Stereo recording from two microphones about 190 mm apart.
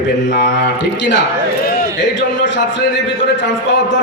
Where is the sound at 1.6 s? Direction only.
70° left (ahead or behind).